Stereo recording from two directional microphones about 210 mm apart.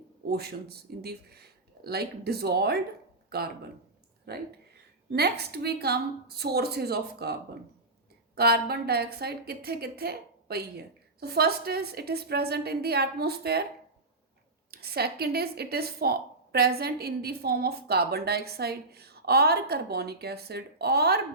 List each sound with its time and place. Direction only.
0.3 s a woman's voice: 50° right (ahead or behind)
8.4 s a woman's voice: 50° right (ahead or behind)
14.7 s a woman's voice: 50° right (ahead or behind)